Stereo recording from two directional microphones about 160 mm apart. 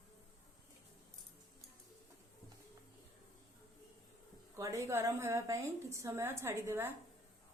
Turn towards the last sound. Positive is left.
turn(degrees=-15)  # may be behind; listen again after turning